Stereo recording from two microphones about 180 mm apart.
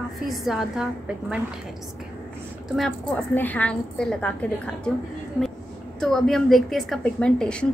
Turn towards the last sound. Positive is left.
turn(degrees=5)  # may be behind; listen again after turning